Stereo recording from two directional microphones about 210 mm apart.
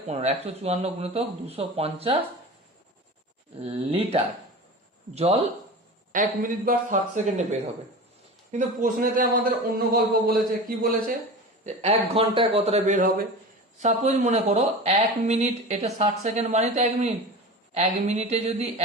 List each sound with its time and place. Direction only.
0.1 s speech: 30° right (ahead or behind)
3.6 s speech: 30° right (ahead or behind)
6.1 s speech: 40° right (ahead or behind)
11.6 s speech: 30° right (ahead or behind)